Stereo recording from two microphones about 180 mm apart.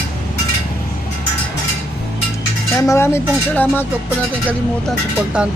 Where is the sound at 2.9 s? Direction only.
15° left (ahead or behind).